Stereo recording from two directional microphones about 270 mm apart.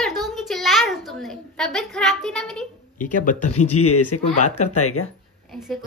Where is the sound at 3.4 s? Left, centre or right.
Left.